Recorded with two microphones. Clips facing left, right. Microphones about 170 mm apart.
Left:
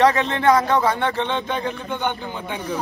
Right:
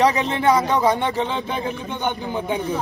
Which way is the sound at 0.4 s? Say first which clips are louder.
Left 1 dB; 15° right (ahead or behind).